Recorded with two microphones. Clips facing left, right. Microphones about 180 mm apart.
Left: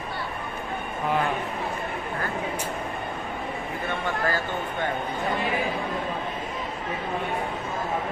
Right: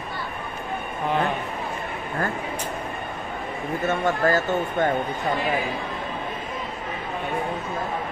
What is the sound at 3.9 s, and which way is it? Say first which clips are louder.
Speech: right 6 dB; 45° right (ahead or behind).